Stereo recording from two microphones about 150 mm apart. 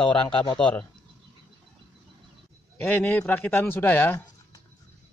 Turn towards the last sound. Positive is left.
turn(degrees=15)  # may be behind; listen again after turning